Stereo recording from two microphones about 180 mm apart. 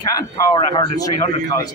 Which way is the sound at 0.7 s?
20° left (ahead or behind).